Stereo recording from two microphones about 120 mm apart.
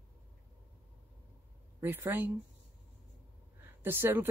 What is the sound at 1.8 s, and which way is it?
Speech, 20° right (ahead or behind).